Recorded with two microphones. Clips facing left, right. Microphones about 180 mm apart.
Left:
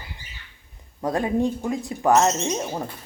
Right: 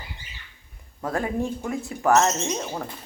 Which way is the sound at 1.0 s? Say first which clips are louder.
Left 4 dB; 20° left (ahead or behind).